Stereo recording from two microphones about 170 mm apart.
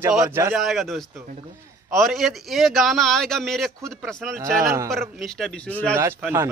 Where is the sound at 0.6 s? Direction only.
Centre (ahead or behind).